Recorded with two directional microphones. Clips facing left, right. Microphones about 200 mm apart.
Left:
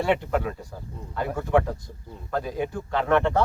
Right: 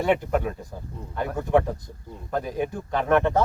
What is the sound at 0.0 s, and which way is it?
Speech, 15° right (ahead or behind).